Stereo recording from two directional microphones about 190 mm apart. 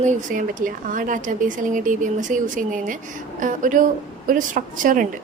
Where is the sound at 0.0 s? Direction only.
40° right (ahead or behind).